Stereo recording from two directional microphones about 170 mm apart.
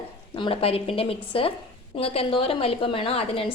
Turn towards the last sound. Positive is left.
turn(degrees=35)  # may be behind; listen again after turning